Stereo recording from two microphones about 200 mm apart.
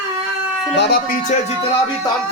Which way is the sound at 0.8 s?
50° left (ahead or behind).